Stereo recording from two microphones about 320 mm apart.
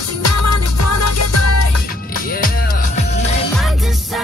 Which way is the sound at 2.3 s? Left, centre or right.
Left.